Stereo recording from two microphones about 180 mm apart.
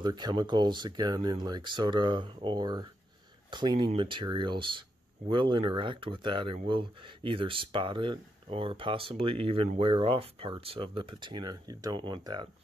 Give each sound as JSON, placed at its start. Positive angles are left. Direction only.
{"t": 0.0, "sound": "speech", "side_deg": -25}